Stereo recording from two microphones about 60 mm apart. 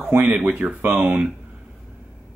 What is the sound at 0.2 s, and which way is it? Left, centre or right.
Speech, right.